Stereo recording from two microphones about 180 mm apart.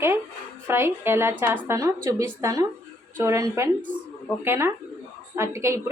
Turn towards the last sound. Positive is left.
turn(degrees=-15)  # may be behind; listen again after turning